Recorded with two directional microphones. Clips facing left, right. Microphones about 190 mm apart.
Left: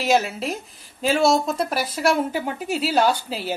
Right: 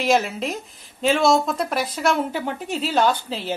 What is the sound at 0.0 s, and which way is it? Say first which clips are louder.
Speech: even; 5° left (ahead or behind).